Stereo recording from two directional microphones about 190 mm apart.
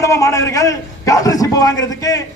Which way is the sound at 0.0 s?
15° left (ahead or behind).